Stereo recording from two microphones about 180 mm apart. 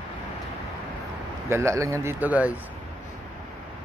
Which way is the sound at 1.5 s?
15° right (ahead or behind).